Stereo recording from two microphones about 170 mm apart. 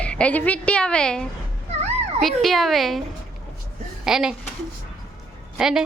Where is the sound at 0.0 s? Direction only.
5° left (ahead or behind).